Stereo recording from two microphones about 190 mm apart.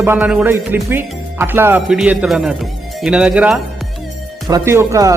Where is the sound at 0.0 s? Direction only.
10° right (ahead or behind).